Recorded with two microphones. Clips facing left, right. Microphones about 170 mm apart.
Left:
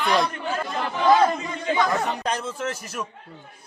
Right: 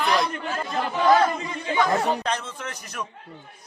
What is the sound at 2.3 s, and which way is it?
Speech, 10° left (ahead or behind).